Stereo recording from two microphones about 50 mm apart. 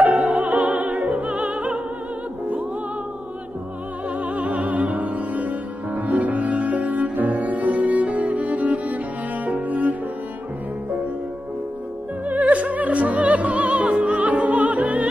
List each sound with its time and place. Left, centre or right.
0.0 s opera: right
4.2 s music: right
9.5 s cello: right
12.3 s music: right